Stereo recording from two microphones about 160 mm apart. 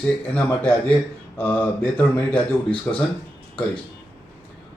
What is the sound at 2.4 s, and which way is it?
Speech, 35° left (ahead or behind).